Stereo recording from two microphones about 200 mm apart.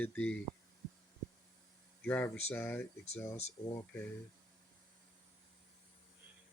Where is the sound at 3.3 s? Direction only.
30° left (ahead or behind).